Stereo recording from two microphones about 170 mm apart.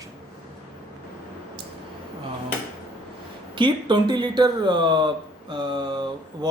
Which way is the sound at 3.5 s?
30° right (ahead or behind).